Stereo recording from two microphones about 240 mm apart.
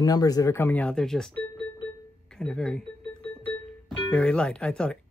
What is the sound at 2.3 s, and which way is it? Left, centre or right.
Speech, centre.